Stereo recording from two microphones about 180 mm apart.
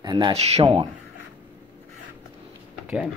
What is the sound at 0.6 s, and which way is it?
Speech, 25° right (ahead or behind).